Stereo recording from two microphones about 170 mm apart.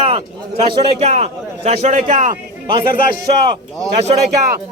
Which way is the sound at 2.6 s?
30° right (ahead or behind).